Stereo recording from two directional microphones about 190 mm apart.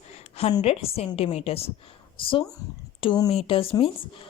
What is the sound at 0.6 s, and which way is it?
Speech, 30° left (ahead or behind).